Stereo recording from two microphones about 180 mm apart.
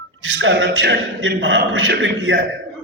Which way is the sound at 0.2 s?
90° right.